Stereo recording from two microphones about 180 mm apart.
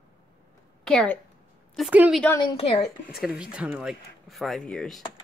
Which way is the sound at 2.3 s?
30° left (ahead or behind).